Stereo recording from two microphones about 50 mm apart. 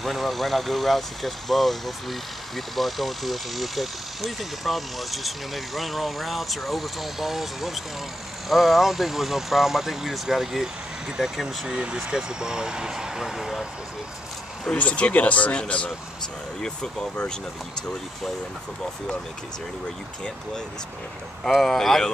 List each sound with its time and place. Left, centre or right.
0.0 s speech: centre
14.7 s speech: left
16.6 s speech: centre
21.6 s speech: centre